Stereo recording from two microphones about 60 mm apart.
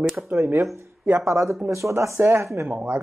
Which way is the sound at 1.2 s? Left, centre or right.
Right.